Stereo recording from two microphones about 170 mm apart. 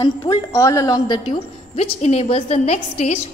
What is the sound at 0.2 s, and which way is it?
A woman's voice, 25° left (ahead or behind).